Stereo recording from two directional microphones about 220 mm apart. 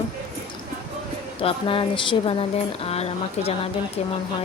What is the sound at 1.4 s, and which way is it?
Speech, 20° left (ahead or behind).